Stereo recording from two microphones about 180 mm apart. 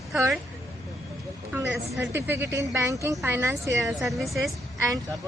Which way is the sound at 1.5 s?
5° right (ahead or behind).